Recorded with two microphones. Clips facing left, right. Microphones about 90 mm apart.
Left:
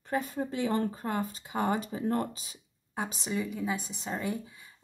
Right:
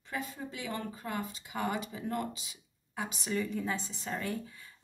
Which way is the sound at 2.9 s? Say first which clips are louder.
Left 3 dB; 25° left (ahead or behind).